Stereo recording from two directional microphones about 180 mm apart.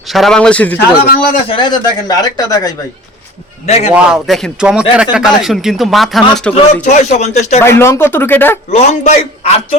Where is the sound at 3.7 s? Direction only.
35° left (ahead or behind).